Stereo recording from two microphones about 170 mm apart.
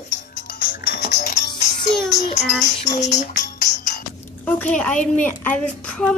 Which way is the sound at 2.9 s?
45° left (ahead or behind).